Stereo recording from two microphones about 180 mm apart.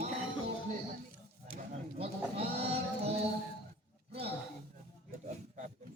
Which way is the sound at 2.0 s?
35° right (ahead or behind).